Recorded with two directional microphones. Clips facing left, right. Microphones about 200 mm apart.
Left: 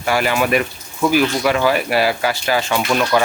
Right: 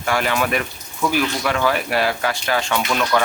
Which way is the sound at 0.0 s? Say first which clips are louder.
Left 3 dB; 5° left (ahead or behind).